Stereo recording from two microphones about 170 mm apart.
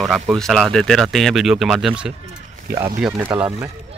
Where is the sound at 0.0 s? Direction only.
Centre (ahead or behind).